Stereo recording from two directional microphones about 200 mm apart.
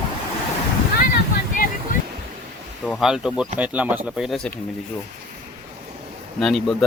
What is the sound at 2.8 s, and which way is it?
Speech, centre (ahead or behind).